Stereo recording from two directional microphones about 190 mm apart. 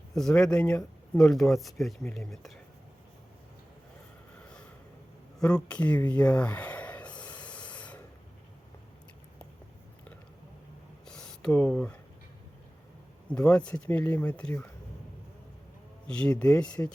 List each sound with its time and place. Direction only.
0.1 s speech: 5° left (ahead or behind)
5.4 s a sound: 5° left (ahead or behind)
7.7 s mechanisms: 5° left (ahead or behind)
11.0 s a sound: 5° left (ahead or behind)
13.3 s speech: 5° left (ahead or behind)
16.0 s speech: 5° left (ahead or behind)